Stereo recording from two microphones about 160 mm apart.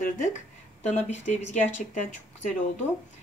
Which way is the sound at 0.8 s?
45° left (ahead or behind).